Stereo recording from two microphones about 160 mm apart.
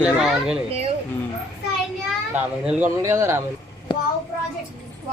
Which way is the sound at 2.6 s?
10° right (ahead or behind).